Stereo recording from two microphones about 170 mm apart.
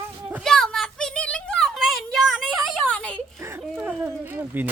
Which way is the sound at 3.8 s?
10° right (ahead or behind).